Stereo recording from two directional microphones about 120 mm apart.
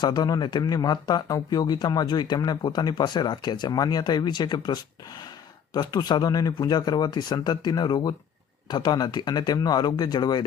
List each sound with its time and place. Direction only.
0.0 s speech: 35° left (ahead or behind)